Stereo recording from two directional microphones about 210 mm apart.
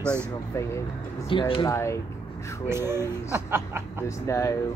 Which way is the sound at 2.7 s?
10° right (ahead or behind).